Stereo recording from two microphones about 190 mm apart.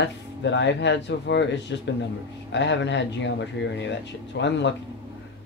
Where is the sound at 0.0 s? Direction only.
70° left (ahead or behind).